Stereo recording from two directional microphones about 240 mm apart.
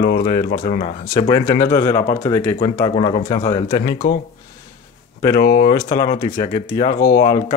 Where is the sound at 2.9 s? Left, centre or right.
Left.